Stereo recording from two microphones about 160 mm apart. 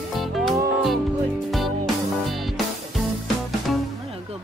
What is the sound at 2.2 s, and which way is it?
Music, centre (ahead or behind).